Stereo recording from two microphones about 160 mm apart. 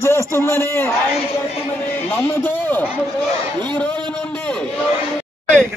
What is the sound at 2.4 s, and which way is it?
Speech, 10° left (ahead or behind).